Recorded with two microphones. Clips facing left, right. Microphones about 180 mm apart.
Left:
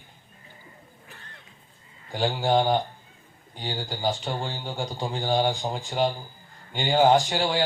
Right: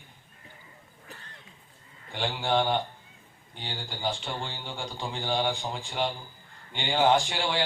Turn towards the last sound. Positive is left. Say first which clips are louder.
# left 4 dB
turn(degrees=40)  # may be behind; listen again after turning